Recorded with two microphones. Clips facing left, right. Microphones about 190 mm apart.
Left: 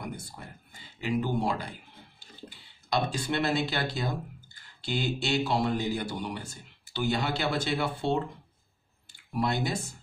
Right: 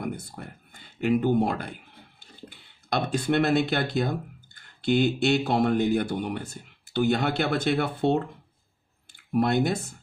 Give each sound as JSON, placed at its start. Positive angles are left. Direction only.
{"t": 0.0, "sound": "speech", "side_deg": -55}